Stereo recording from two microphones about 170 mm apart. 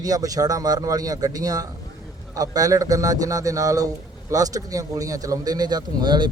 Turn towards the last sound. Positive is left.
turn(degrees=-25)  # may be behind; listen again after turning